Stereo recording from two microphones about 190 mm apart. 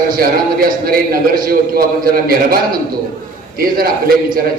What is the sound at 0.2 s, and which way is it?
A man's voice, 50° right (ahead or behind).